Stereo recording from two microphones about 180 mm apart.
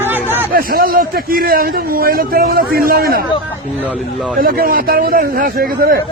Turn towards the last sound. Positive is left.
turn(degrees=-55)  # may be behind; listen again after turning